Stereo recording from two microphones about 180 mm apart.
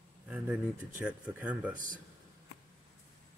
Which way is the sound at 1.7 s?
50° right (ahead or behind).